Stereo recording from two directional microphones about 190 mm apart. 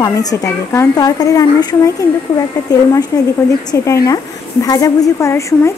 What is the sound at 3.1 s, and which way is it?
A woman's voice, 15° left (ahead or behind).